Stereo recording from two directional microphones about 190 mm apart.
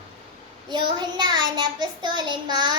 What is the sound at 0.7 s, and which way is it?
A child's voice, 25° right (ahead or behind).